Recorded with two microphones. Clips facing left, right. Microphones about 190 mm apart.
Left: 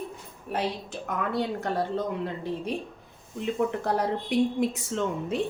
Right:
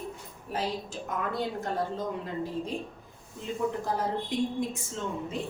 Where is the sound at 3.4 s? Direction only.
70° left (ahead or behind).